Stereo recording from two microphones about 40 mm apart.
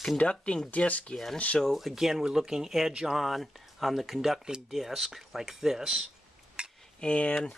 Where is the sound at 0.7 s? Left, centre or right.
Left.